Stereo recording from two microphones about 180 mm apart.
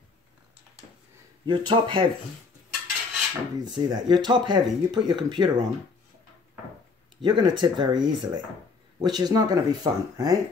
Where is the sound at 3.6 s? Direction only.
25° right (ahead or behind).